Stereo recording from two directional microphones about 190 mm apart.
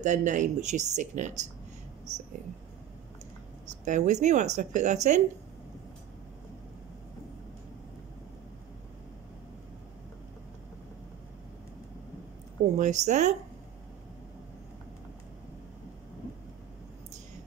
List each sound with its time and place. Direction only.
0.0 s speech: 40° right (ahead or behind)
3.8 s speech: 40° right (ahead or behind)
12.7 s speech: 40° right (ahead or behind)